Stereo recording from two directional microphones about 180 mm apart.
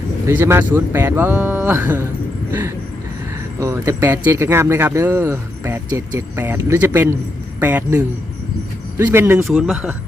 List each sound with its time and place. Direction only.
0.3 s speech: 15° right (ahead or behind)